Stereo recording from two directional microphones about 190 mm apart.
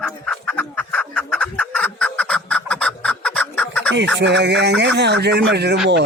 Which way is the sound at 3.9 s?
70° right (ahead or behind).